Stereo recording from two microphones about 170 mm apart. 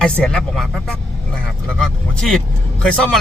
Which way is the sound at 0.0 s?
5° left (ahead or behind).